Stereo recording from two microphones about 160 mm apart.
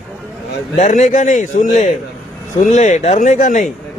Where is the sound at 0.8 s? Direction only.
50° left (ahead or behind).